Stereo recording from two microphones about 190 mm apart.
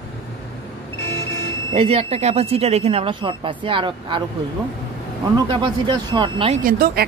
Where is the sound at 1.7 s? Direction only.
30° right (ahead or behind).